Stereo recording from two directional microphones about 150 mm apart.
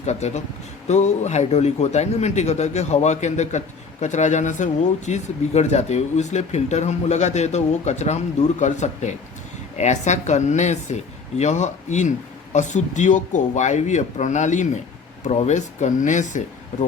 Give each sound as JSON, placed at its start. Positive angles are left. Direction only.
{"t": 0.0, "sound": "speech", "side_deg": 50}